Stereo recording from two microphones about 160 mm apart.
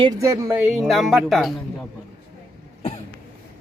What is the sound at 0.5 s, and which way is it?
Speech, 5° right (ahead or behind).